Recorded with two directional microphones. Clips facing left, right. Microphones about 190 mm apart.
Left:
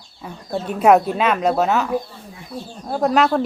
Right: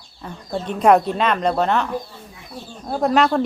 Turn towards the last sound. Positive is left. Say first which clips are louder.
# even
turn(degrees=0)  # may be behind; listen again after turning